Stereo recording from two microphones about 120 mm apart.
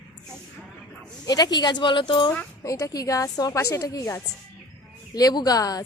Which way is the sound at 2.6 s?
30° left (ahead or behind).